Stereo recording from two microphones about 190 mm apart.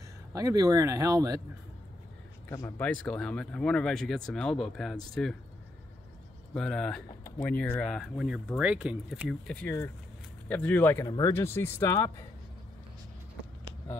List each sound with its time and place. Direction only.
0.3 s speech: 20° right (ahead or behind)
2.5 s speech: 10° left (ahead or behind)
6.5 s speech: 5° left (ahead or behind)
9.3 s speech: 5° left (ahead or behind)